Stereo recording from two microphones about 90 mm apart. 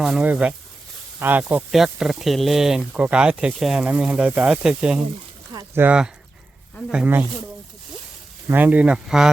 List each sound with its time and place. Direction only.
0.0 s speech: 5° right (ahead or behind)
1.7 s speech: 5° right (ahead or behind)
5.5 s a sound: 45° right (ahead or behind)
6.9 s speech: 20° right (ahead or behind)
8.5 s speech: 20° right (ahead or behind)